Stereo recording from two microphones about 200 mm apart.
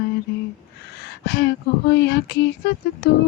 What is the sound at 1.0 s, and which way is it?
Music, 55° left (ahead or behind).